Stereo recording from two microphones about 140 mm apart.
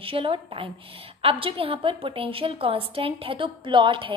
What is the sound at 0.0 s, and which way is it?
A woman's voice, 40° right (ahead or behind).